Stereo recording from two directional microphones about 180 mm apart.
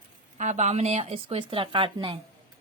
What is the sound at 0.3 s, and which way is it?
A woman's voice, 40° right (ahead or behind).